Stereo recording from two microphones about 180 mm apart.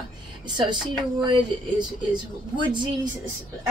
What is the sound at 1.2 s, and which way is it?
A woman's voice, 25° right (ahead or behind).